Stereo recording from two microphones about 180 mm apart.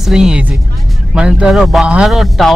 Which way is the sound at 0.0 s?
5° right (ahead or behind).